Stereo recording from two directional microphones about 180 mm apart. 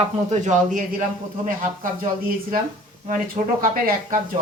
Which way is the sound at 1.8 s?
50° right (ahead or behind).